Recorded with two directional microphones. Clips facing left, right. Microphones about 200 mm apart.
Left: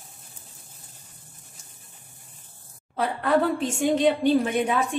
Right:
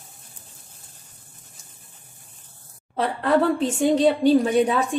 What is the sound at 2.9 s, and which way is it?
A woman's voice, 35° right (ahead or behind).